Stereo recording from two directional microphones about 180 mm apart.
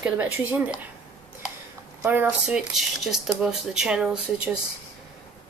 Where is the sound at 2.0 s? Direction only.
10° right (ahead or behind).